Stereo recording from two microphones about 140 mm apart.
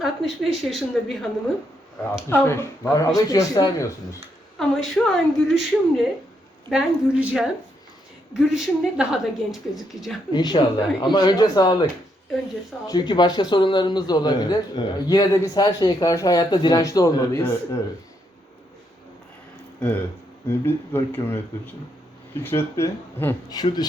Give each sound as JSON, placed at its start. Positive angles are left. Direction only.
{"t": 0.0, "sound": "a woman's voice", "side_deg": 0}
{"t": 2.3, "sound": "a man's voice", "side_deg": 15}
{"t": 4.5, "sound": "a woman's voice", "side_deg": 0}
{"t": 10.3, "sound": "speech", "side_deg": 30}
{"t": 12.9, "sound": "a man's voice", "side_deg": 30}
{"t": 20.5, "sound": "speech", "side_deg": 15}
{"t": 22.4, "sound": "a man's voice", "side_deg": 20}